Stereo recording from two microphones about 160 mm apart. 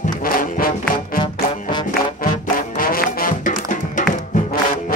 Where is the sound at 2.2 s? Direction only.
65° left (ahead or behind).